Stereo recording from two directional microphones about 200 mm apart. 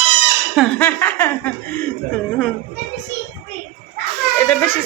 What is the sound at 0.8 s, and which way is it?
Chuckle, 10° left (ahead or behind).